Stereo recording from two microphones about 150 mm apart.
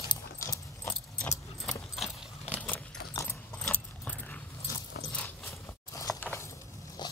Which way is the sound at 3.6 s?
10° left (ahead or behind).